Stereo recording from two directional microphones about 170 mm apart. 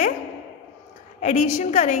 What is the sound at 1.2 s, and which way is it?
Speech, 45° left (ahead or behind).